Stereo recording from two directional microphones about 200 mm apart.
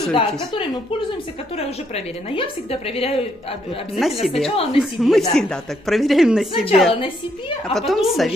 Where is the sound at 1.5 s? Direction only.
30° left (ahead or behind).